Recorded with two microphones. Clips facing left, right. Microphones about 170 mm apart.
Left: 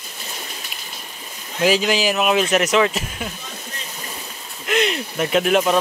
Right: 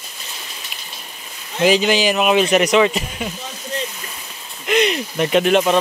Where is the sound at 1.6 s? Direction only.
Centre (ahead or behind).